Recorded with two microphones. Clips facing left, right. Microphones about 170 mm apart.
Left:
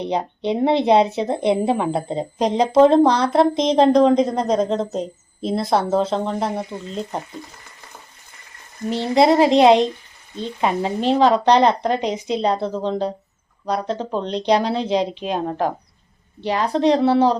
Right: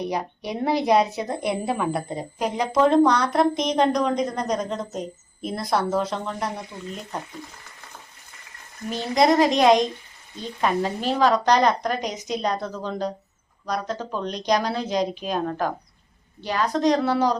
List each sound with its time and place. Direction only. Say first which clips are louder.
0.0 s speech: left 5 dB; 25° left (ahead or behind)
8.9 s speech: left 4 dB; 30° left (ahead or behind)